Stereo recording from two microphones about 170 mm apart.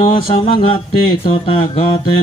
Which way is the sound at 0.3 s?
30° left (ahead or behind).